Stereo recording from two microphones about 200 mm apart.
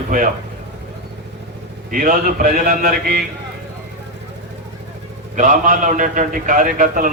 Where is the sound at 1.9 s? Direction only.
45° right (ahead or behind).